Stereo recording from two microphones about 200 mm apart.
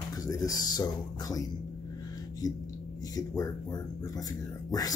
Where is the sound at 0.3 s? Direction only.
15° left (ahead or behind).